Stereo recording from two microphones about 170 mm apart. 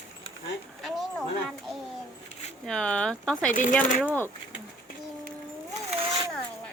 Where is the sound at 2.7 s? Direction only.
5° left (ahead or behind).